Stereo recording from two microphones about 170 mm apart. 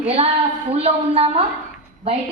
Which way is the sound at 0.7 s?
35° right (ahead or behind).